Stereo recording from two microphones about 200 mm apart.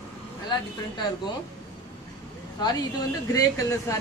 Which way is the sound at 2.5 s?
20° left (ahead or behind).